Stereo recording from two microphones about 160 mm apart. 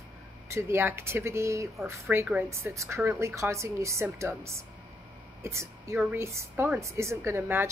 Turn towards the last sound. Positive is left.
turn(degrees=-15)  # may be behind; listen again after turning